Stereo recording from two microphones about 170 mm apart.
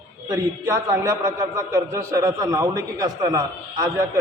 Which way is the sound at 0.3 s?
15° right (ahead or behind).